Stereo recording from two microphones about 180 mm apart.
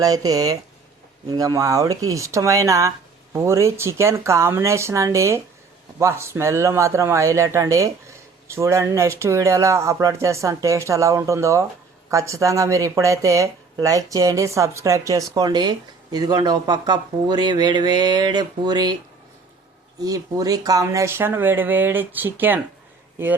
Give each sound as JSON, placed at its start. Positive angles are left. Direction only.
{"t": 0.0, "sound": "speech", "side_deg": -20}
{"t": 20.0, "sound": "speech", "side_deg": -20}